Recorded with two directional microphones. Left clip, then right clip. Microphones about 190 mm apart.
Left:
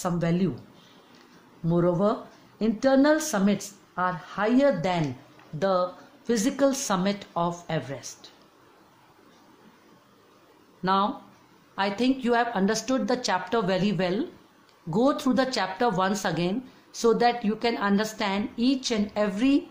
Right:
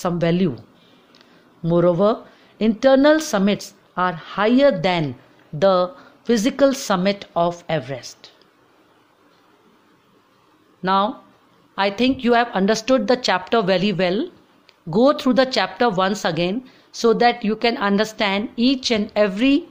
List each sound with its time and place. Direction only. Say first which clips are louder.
0.0 s speech: right 7 dB; 35° right (ahead or behind)
1.7 s speech: right 8 dB; 35° right (ahead or behind)
10.8 s speech: right 5 dB; 30° right (ahead or behind)